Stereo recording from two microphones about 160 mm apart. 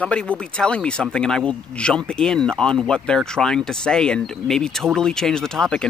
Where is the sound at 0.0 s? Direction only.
5° left (ahead or behind).